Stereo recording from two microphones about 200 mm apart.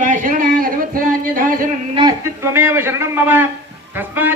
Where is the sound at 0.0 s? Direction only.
40° right (ahead or behind).